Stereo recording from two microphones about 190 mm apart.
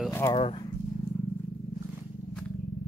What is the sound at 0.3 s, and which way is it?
Speech, 25° left (ahead or behind).